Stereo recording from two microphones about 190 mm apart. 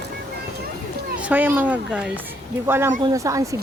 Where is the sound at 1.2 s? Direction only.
10° right (ahead or behind).